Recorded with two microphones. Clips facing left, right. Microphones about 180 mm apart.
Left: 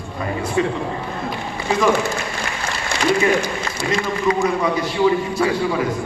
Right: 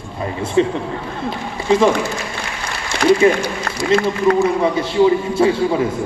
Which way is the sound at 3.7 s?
55° right (ahead or behind).